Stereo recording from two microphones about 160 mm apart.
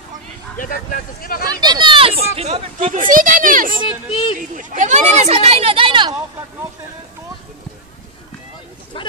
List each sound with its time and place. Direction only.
0.6 s speech: 60° left (ahead or behind)
1.5 s speech: 25° right (ahead or behind); by 3.7 s 60° right (ahead or behind)
4.1 s speech: 35° left (ahead or behind)
4.4 s speech: 55° right (ahead or behind); by 6.1 s 30° right (ahead or behind)
9.0 s speech: 30° left (ahead or behind)